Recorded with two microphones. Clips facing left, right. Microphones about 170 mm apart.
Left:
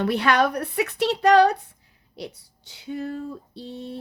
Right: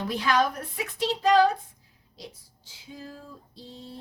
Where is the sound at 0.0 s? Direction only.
65° left (ahead or behind).